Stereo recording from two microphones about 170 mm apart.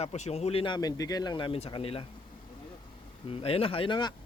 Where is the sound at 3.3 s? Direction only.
35° left (ahead or behind).